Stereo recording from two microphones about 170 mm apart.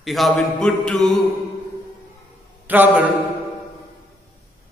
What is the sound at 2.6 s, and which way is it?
Speech, 10° right (ahead or behind).